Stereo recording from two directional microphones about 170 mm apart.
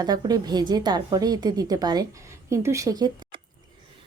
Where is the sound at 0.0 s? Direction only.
25° right (ahead or behind).